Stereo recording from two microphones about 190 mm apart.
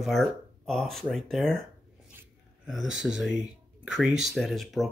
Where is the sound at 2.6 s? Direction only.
Centre (ahead or behind).